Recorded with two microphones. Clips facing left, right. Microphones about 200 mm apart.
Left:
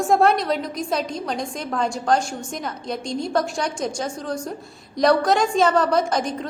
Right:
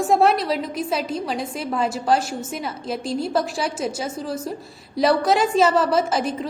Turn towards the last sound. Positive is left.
turn(degrees=-5)  # may be behind; listen again after turning